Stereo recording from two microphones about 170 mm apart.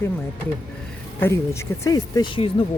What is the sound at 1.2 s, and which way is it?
Speech, 15° left (ahead or behind).